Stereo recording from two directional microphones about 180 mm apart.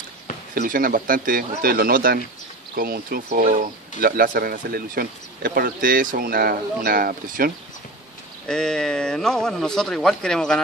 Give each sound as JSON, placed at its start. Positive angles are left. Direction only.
{"t": 0.6, "sound": "speech", "side_deg": -50}
{"t": 8.5, "sound": "speech", "side_deg": 5}